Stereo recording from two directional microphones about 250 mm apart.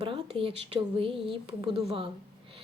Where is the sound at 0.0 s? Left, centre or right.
Right.